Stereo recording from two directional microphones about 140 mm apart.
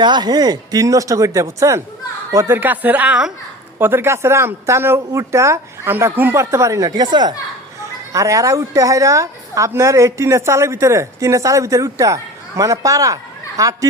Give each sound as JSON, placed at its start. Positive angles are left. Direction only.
{"t": 0.0, "sound": "a woman's voice", "side_deg": -30}